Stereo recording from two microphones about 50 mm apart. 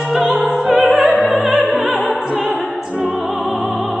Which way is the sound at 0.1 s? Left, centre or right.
Centre.